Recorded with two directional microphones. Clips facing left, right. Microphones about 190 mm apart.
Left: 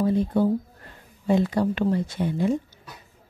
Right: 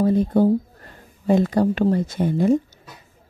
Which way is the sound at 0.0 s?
45° right (ahead or behind).